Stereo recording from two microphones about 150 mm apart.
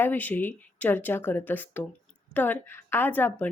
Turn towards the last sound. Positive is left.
turn(degrees=10)  # may be behind; listen again after turning